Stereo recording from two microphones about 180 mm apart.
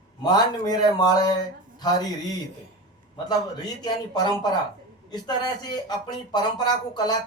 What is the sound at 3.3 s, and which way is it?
Speech, 20° left (ahead or behind).